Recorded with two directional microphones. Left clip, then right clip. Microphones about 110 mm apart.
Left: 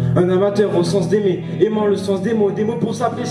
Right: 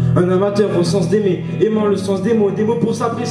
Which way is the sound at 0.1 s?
15° left (ahead or behind).